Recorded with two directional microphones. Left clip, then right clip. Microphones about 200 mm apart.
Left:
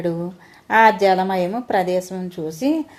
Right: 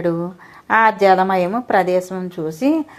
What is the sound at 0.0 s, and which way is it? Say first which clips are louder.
A woman's voice: right 4 dB; 25° right (ahead or behind).